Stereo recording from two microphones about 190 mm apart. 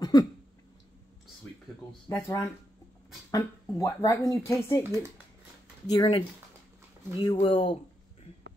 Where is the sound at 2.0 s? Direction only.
15° left (ahead or behind).